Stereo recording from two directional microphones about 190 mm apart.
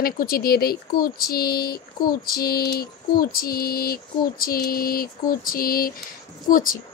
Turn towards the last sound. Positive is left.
turn(degrees=45)  # may be behind; listen again after turning